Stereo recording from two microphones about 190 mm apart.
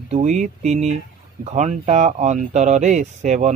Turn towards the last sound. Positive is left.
turn(degrees=-40)  # may be behind; listen again after turning